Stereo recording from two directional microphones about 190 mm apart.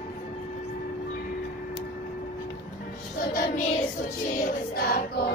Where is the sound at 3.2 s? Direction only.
50° left (ahead or behind).